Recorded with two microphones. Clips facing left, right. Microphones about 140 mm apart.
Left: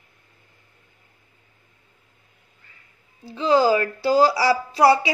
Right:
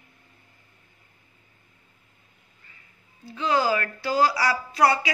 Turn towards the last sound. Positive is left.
turn(degrees=30)  # may be behind; listen again after turning